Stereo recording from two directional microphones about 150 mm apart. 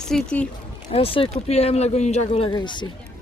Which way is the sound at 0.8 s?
40° left (ahead or behind).